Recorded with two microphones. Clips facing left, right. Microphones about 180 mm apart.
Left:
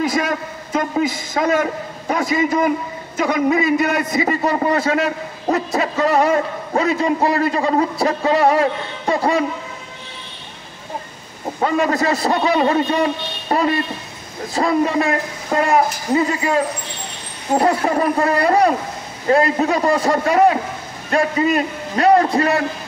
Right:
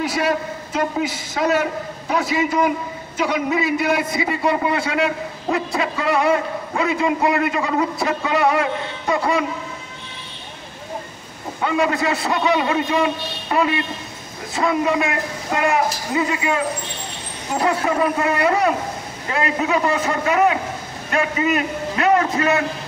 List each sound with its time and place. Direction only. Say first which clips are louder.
0.1 s a sound: even; 50° left (ahead or behind)
1.3 s a man's voice: even; 50° left (ahead or behind)
11.6 s a man's voice: left 2 dB; 40° left (ahead or behind)